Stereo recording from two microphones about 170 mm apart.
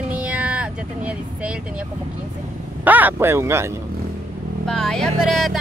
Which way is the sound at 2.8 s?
10° right (ahead or behind).